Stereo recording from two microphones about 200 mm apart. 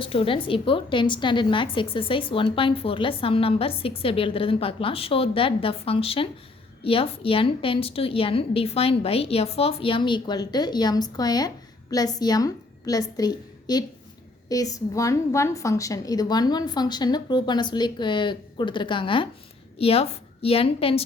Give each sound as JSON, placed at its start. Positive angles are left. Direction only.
{"t": 0.0, "sound": "a woman's voice", "side_deg": 25}